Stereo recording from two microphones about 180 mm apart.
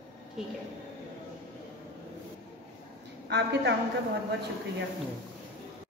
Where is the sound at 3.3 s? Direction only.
70° right (ahead or behind).